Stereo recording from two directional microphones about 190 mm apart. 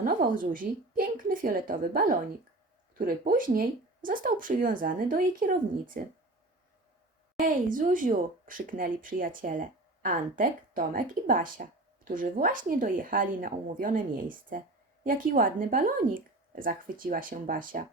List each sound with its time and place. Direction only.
0.0 s a woman's voice: 45° right (ahead or behind)
7.3 s speech: 45° right (ahead or behind)